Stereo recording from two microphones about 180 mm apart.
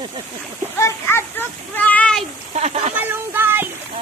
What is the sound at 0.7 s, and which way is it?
Speech, 15° left (ahead or behind).